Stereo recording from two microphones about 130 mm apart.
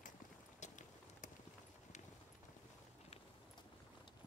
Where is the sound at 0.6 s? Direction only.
70° left (ahead or behind).